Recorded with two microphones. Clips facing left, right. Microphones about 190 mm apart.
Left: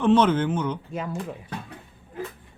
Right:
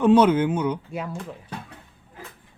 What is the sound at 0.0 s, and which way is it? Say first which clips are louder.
Speech: right 3 dB; 10° right (ahead or behind).